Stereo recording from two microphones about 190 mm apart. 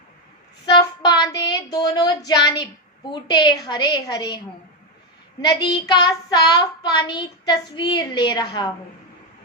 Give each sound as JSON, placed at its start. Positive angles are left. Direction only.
{"t": 0.6, "sound": "child singing", "side_deg": 20}
{"t": 2.5, "sound": "a woman's voice", "side_deg": 25}
{"t": 5.4, "sound": "a woman's voice", "side_deg": 20}